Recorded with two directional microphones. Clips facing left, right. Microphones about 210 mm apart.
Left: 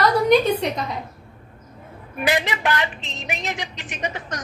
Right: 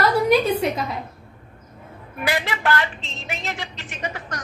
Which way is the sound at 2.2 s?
20° left (ahead or behind).